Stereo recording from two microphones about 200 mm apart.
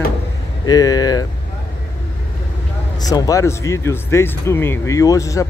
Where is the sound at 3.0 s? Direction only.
20° left (ahead or behind).